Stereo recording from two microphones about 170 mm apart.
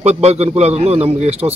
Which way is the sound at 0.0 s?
40° right (ahead or behind).